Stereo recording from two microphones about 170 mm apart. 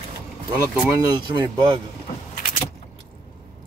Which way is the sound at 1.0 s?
25° right (ahead or behind).